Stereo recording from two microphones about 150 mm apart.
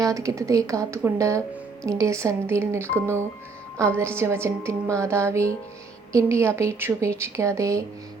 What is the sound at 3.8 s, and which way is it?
Speech, 15° right (ahead or behind).